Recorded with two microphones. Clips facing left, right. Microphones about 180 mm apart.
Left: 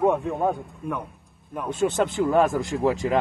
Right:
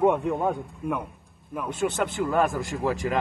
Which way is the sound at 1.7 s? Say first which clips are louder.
Left 4 dB; 20° left (ahead or behind).